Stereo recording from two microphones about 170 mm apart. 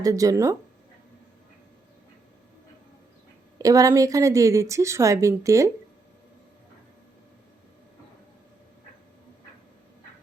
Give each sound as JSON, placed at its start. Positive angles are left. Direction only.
{"t": 0.0, "sound": "a woman's voice", "side_deg": -20}
{"t": 3.6, "sound": "a woman's voice", "side_deg": -20}